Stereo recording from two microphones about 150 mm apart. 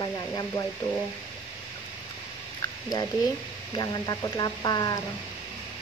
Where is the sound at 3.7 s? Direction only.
25° left (ahead or behind).